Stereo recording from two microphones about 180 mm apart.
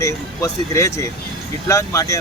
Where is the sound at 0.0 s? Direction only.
15° left (ahead or behind).